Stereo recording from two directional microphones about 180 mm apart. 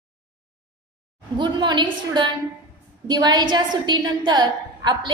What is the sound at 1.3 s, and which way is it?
A woman's voice, 25° right (ahead or behind).